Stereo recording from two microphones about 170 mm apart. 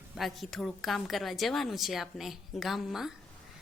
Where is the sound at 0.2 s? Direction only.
Centre (ahead or behind).